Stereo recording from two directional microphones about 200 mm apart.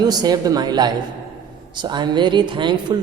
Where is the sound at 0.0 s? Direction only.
20° right (ahead or behind).